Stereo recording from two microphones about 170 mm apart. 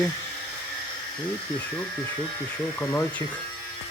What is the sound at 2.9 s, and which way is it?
Speech, 20° left (ahead or behind).